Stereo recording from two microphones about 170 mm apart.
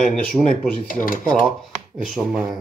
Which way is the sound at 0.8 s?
55° left (ahead or behind).